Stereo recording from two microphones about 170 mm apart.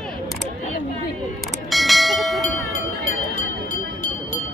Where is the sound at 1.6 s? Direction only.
Centre (ahead or behind).